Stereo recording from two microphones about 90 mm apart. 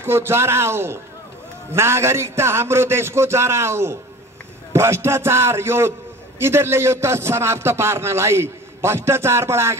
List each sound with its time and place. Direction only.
0.0 s speech: 25° right (ahead or behind)